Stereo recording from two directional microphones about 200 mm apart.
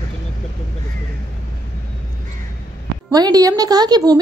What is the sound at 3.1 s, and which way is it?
A woman's voice, 20° right (ahead or behind).